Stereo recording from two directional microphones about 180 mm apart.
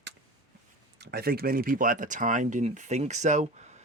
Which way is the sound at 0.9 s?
60° right (ahead or behind).